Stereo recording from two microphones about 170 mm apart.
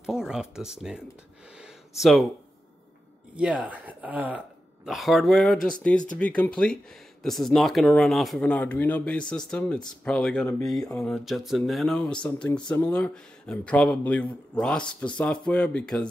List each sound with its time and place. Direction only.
0.0 s speech: 5° right (ahead or behind)
1.6 s a sound: centre (ahead or behind)
3.3 s speech: 5° right (ahead or behind)
10.8 s speech: 20° left (ahead or behind)
11.1 s speech: centre (ahead or behind)